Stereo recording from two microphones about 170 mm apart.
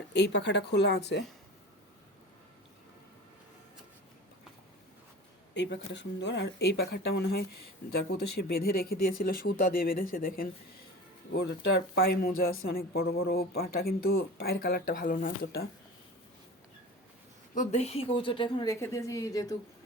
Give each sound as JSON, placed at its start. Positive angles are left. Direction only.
{"t": 0.1, "sound": "speech", "side_deg": 90}
{"t": 5.5, "sound": "speech", "side_deg": 90}
{"t": 11.9, "sound": "speech", "side_deg": 65}
{"t": 17.5, "sound": "a woman's voice", "side_deg": 45}